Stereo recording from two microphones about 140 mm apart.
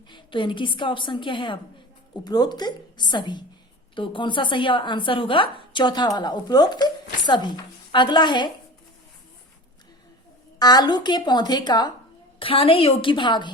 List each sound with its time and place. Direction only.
0.1 s speech: 35° left (ahead or behind)
10.6 s speech: 30° left (ahead or behind)